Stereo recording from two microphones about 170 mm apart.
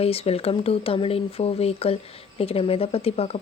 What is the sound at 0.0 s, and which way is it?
Speech, 35° left (ahead or behind).